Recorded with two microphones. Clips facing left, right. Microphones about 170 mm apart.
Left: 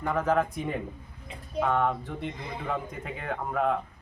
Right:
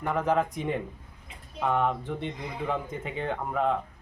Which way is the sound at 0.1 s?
15° right (ahead or behind).